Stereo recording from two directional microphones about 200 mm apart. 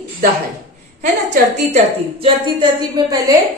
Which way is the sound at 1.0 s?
35° right (ahead or behind).